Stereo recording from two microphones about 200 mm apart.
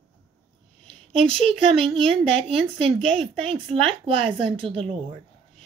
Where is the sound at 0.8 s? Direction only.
25° right (ahead or behind).